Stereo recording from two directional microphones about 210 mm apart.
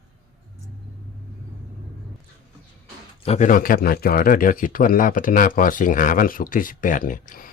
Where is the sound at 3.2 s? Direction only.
35° left (ahead or behind).